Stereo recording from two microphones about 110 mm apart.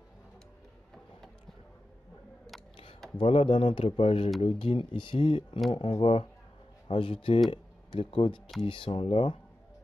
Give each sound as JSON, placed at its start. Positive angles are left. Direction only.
{"t": 3.2, "sound": "speech", "side_deg": 55}